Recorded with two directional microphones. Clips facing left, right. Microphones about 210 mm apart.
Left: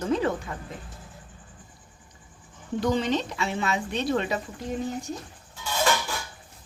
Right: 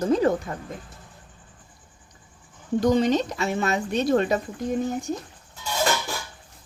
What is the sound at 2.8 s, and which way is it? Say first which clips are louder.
Speech: right 5 dB; 40° right (ahead or behind).